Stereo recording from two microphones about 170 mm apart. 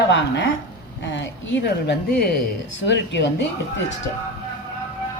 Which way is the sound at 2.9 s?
90° left.